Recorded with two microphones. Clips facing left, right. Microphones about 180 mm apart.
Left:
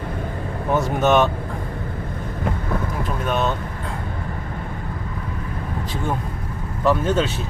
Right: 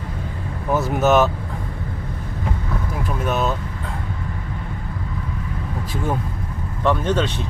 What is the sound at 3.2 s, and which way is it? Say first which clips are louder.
Speech: even; 5° right (ahead or behind).